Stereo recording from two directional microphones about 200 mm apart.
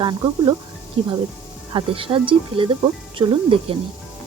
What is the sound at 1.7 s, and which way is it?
Speech, 25° right (ahead or behind).